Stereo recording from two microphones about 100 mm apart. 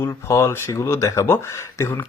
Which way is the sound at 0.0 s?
25° left (ahead or behind).